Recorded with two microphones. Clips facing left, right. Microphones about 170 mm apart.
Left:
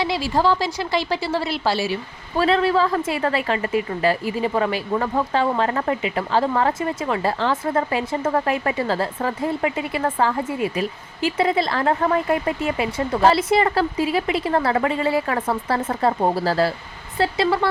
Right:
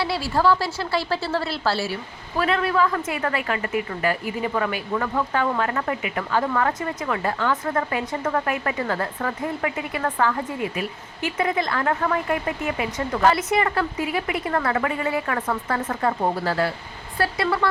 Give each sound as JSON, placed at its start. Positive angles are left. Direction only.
{"t": 0.0, "sound": "a woman's voice", "side_deg": 15}
{"t": 2.3, "sound": "speech", "side_deg": 30}
{"t": 17.2, "sound": "speech", "side_deg": 25}